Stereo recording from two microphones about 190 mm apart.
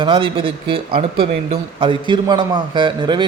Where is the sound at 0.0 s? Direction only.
25° right (ahead or behind).